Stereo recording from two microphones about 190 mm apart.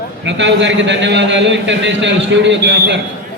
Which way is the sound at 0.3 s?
70° right (ahead or behind).